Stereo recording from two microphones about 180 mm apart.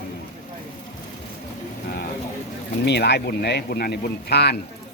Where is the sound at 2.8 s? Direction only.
70° left (ahead or behind).